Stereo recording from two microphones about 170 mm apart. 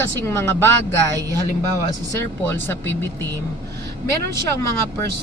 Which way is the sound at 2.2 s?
15° left (ahead or behind).